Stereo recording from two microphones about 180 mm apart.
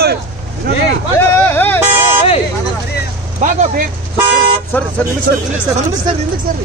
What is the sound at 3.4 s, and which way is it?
Speech, 45° right (ahead or behind).